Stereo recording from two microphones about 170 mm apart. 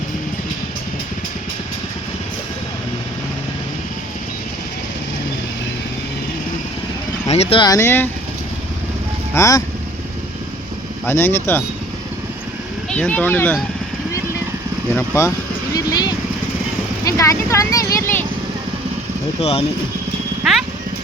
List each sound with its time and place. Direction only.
7.3 s speech: 40° left (ahead or behind)
7.6 s speech: 20° left (ahead or behind)
9.3 s speech: 20° left (ahead or behind)
11.0 s speech: 15° left (ahead or behind)
12.9 s speech: 10° left (ahead or behind)
14.9 s speech: 15° left (ahead or behind)
15.7 s vehicle: 25° left (ahead or behind)
17.1 s speech: 15° left (ahead or behind)
19.4 s speech: 35° left (ahead or behind)